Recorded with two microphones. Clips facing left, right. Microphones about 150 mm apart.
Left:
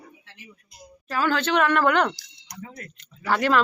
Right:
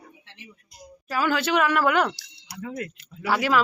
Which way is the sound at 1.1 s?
10° right (ahead or behind).